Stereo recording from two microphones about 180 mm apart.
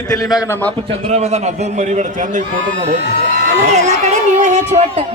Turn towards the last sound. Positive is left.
turn(degrees=-40)  # may be behind; listen again after turning